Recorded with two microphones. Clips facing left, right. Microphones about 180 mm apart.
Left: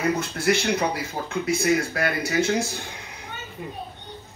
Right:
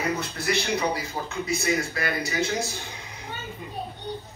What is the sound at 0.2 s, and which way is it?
A man's voice, 50° left (ahead or behind).